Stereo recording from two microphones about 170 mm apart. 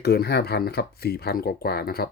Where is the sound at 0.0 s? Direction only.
70° left (ahead or behind).